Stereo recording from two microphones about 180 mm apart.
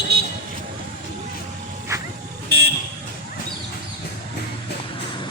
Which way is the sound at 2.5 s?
65° right (ahead or behind).